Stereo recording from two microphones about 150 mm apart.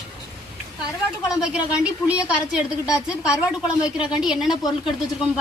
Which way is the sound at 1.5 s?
5° right (ahead or behind).